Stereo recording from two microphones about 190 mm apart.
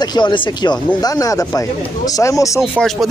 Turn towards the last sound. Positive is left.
turn(degrees=0)  # may be behind; listen again after turning